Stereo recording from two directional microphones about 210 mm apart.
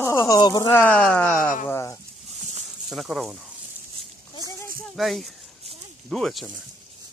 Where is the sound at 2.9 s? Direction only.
Centre (ahead or behind).